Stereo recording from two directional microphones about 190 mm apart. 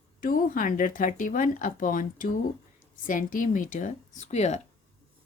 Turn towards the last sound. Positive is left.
turn(degrees=35)  # may be behind; listen again after turning